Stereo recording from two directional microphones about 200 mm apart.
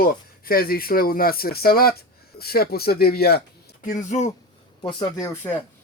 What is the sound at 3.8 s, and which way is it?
Speech, 40° left (ahead or behind).